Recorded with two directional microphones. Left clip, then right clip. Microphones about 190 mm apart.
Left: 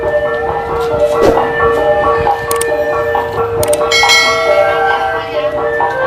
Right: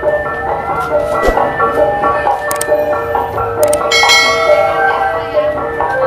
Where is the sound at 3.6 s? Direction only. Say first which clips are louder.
Right 1 dB; centre (ahead or behind).